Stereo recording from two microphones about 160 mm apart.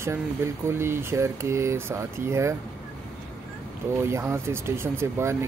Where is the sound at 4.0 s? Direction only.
15° right (ahead or behind).